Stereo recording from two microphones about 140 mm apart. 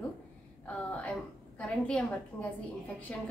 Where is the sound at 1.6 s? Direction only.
10° left (ahead or behind).